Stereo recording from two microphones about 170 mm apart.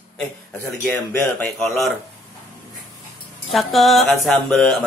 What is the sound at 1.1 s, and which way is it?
Speech, 5° left (ahead or behind).